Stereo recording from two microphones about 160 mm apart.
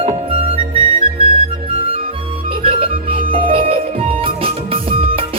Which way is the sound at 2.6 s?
35° right (ahead or behind).